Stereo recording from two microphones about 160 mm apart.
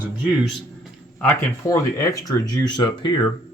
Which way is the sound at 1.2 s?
15° left (ahead or behind).